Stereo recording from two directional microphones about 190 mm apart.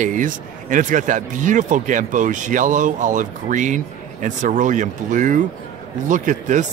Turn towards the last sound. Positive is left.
turn(degrees=-40)  # may be behind; listen again after turning